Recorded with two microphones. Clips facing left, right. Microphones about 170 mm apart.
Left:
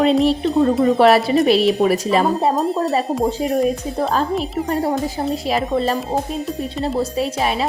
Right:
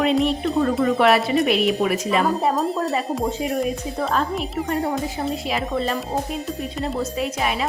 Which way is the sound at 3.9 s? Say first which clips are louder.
Left 4 dB; 35° left (ahead or behind).